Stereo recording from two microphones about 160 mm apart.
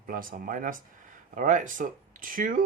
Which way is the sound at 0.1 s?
60° right (ahead or behind).